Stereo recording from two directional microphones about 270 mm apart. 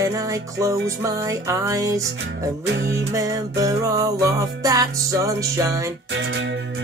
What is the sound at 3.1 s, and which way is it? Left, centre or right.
Music, centre.